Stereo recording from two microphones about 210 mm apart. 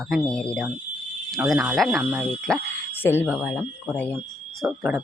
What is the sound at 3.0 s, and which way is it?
Speech, 10° left (ahead or behind).